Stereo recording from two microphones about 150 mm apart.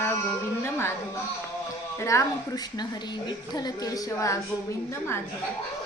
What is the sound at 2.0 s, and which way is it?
Speech, 20° left (ahead or behind).